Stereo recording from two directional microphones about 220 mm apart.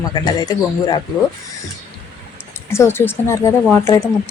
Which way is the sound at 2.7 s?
10° left (ahead or behind).